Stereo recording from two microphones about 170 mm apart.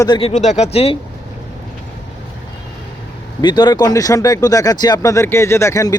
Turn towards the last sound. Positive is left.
turn(degrees=20)  # may be behind; listen again after turning